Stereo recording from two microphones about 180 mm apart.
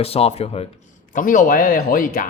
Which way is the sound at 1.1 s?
50° left (ahead or behind).